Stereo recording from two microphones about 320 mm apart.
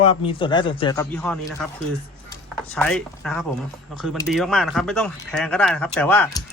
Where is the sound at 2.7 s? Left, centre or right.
Centre.